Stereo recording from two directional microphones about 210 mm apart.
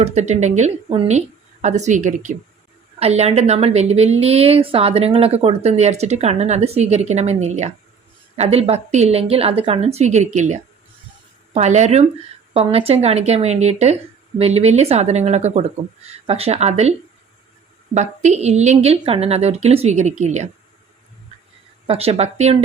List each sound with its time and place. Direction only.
0.0 s a woman's voice: 35° right (ahead or behind)
17.9 s a woman's voice: 35° right (ahead or behind)
21.8 s speech: 30° right (ahead or behind)